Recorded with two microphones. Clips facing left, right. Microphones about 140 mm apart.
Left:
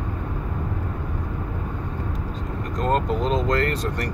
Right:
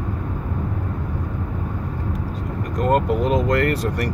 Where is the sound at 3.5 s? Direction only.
30° left (ahead or behind).